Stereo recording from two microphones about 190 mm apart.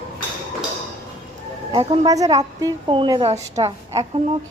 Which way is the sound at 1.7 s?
25° right (ahead or behind).